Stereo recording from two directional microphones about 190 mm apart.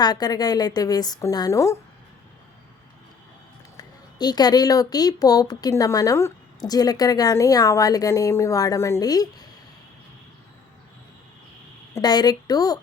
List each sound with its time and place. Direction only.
0.0 s speech: 20° left (ahead or behind)
3.8 s speech: 20° left (ahead or behind)
11.9 s speech: 20° left (ahead or behind)